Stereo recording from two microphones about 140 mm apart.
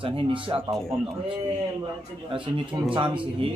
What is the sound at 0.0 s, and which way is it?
Speech, 40° right (ahead or behind).